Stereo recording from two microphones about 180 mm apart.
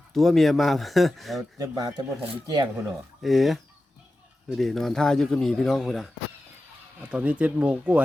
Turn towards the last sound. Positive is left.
turn(degrees=-5)  # may be behind; listen again after turning